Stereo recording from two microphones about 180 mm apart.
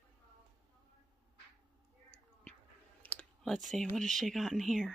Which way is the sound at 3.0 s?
5° left (ahead or behind).